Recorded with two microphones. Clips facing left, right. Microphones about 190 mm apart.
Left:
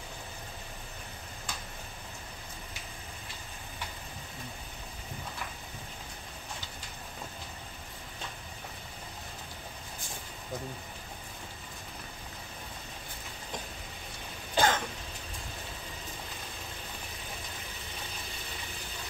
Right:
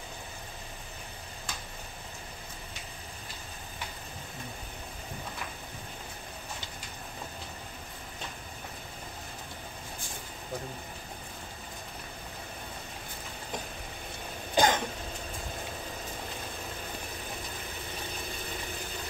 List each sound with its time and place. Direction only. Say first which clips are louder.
14.5 s cough: right 2 dB; 15° right (ahead or behind)